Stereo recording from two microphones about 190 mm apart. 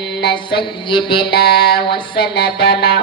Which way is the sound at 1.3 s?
60° left (ahead or behind).